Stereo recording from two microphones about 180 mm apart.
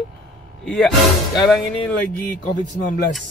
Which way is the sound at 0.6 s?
5° left (ahead or behind).